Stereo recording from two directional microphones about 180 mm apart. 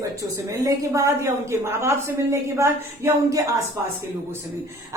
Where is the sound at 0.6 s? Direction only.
15° right (ahead or behind).